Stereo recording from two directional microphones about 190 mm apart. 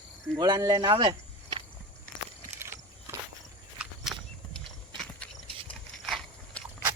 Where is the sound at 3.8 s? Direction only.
Centre (ahead or behind).